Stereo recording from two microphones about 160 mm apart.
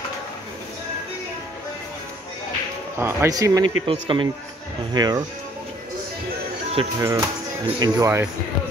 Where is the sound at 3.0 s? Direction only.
15° right (ahead or behind).